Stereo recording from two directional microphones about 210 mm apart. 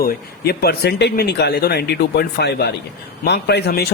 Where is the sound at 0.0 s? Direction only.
50° left (ahead or behind).